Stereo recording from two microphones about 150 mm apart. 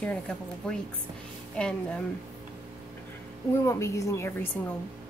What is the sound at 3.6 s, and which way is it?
A woman's voice, 20° left (ahead or behind).